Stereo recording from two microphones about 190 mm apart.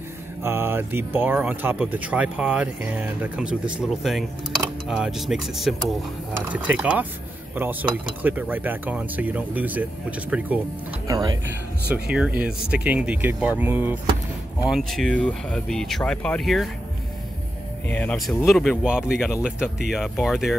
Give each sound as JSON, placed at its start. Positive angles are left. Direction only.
{"t": 0.4, "sound": "speech", "side_deg": -10}
{"t": 11.1, "sound": "speech", "side_deg": -20}
{"t": 11.9, "sound": "speech", "side_deg": -5}
{"t": 17.8, "sound": "speech", "side_deg": 10}